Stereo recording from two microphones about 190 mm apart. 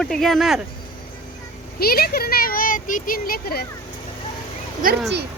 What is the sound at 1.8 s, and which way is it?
Speech, 50° left (ahead or behind).